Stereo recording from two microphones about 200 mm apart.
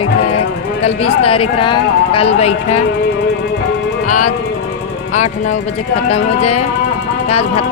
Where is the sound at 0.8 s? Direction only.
30° left (ahead or behind).